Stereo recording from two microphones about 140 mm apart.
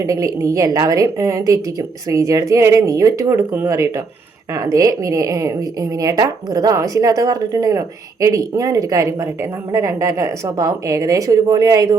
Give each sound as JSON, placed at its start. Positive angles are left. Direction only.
{"t": 0.0, "sound": "a woman's voice", "side_deg": -25}